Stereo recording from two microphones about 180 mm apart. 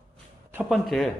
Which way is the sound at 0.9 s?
Centre (ahead or behind).